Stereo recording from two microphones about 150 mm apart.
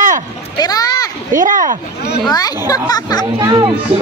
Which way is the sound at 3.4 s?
30° right (ahead or behind).